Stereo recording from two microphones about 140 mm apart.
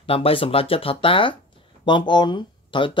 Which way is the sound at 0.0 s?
40° left (ahead or behind).